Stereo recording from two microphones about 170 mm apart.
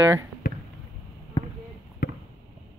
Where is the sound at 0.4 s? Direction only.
60° left (ahead or behind).